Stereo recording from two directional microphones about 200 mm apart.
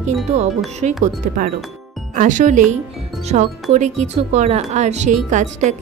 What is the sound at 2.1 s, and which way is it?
Speech, 40° right (ahead or behind).